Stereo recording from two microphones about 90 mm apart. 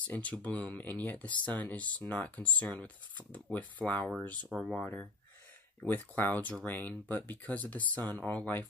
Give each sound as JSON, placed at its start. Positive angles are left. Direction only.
{"t": 0.0, "sound": "speech", "side_deg": 15}
{"t": 4.6, "sound": "speech", "side_deg": 5}
{"t": 5.8, "sound": "speech", "side_deg": 20}